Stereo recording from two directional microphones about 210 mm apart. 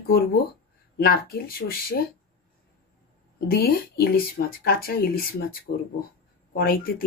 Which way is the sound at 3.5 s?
45° left (ahead or behind).